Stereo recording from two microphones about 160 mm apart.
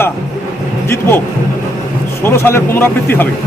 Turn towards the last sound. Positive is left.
turn(degrees=15)  # may be behind; listen again after turning